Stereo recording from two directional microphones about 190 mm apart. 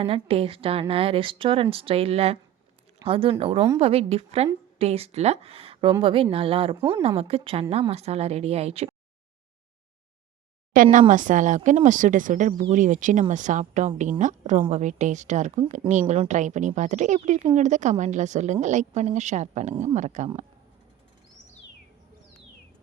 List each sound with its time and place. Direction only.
0.0 s a woman's voice: 30° right (ahead or behind)
11.1 s a woman's voice: 40° right (ahead or behind)